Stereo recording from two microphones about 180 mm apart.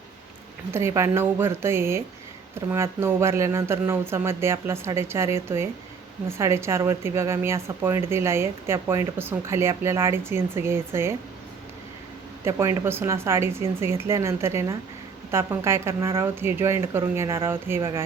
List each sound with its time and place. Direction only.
0.7 s speech: 15° right (ahead or behind)
12.5 s speech: 15° right (ahead or behind)